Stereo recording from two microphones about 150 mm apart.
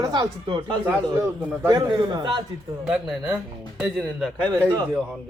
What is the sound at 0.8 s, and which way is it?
Speech, 15° right (ahead or behind).